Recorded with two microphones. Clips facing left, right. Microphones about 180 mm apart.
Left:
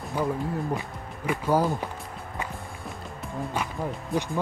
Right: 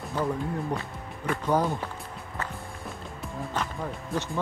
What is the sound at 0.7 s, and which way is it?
Speech, 15° left (ahead or behind).